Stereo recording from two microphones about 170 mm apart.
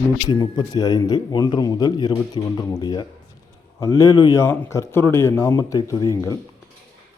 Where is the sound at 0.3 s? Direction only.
25° left (ahead or behind).